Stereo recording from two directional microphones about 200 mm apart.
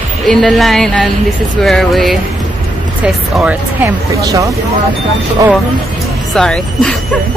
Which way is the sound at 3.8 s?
15° right (ahead or behind).